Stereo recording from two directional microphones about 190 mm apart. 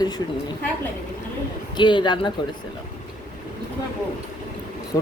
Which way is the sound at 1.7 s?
25° left (ahead or behind).